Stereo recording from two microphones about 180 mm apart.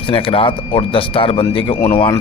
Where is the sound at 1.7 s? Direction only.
10° left (ahead or behind).